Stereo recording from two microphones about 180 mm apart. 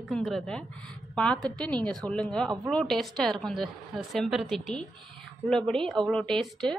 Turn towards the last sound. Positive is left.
turn(degrees=0)  # may be behind; listen again after turning